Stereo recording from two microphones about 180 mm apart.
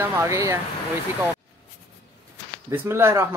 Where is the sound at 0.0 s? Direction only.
15° right (ahead or behind).